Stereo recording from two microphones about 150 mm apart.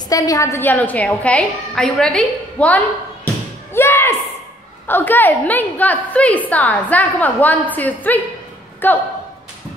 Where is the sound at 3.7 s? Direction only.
15° left (ahead or behind).